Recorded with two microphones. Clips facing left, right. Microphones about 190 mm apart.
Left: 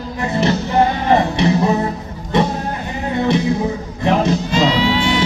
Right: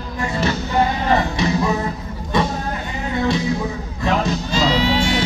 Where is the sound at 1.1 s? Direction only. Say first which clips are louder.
Left 5 dB; 30° left (ahead or behind).